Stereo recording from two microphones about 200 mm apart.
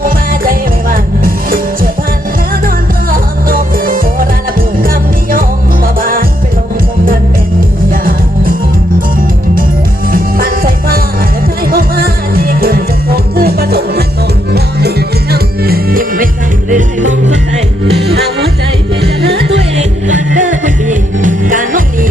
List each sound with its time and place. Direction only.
0.0 s music: 45° right (ahead or behind)
5.3 s music: 45° right (ahead or behind)
7.9 s music: 45° right (ahead or behind)
10.1 s music: 45° right (ahead or behind)
17.9 s music: 55° right (ahead or behind)
20.1 s music: 40° right (ahead or behind)